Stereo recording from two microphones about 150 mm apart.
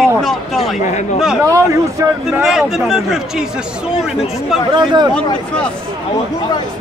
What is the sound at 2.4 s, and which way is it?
A man's voice, 5° right (ahead or behind).